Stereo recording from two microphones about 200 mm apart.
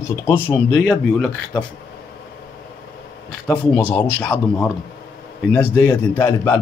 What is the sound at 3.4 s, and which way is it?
A man's voice, 5° left (ahead or behind).